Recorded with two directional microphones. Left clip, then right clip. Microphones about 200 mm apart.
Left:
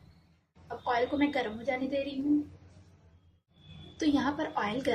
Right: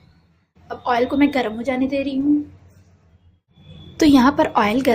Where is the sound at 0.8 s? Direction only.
50° right (ahead or behind).